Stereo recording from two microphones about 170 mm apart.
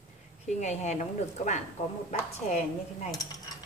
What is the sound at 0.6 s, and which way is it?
A woman's voice, 45° left (ahead or behind).